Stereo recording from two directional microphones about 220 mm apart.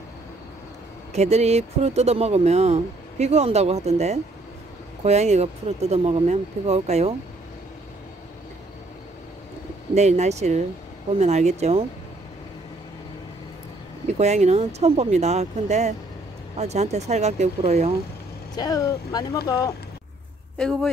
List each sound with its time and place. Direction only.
1.1 s speech: 30° right (ahead or behind)
9.9 s speech: 30° right (ahead or behind)
14.1 s speech: 30° right (ahead or behind)
18.6 s speech: 15° left (ahead or behind)
20.5 s speech: 5° left (ahead or behind)